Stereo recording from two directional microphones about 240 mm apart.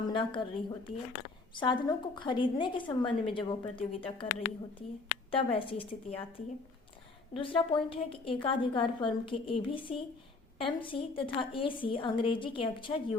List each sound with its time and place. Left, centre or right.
0.0 s a woman's voice: centre
7.3 s a woman's voice: left